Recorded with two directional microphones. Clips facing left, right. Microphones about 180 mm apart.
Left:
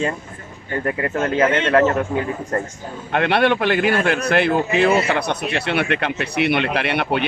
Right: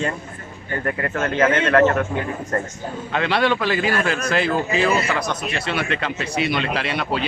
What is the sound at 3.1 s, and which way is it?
Speech, 60° left (ahead or behind).